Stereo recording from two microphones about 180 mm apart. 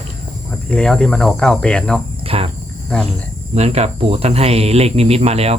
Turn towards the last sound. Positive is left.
turn(degrees=-35)  # may be behind; listen again after turning